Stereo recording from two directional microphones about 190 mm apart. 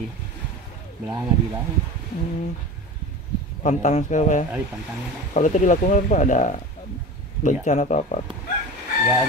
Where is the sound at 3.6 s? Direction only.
40° left (ahead or behind).